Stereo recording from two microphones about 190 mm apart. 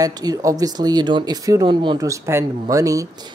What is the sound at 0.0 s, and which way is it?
Speech, 20° right (ahead or behind).